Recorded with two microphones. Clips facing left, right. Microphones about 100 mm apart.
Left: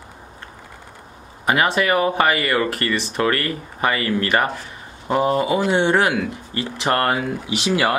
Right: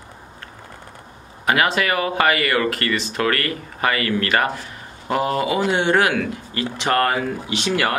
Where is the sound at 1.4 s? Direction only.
20° left (ahead or behind).